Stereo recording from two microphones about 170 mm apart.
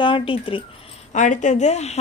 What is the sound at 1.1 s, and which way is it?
Speech, 45° left (ahead or behind).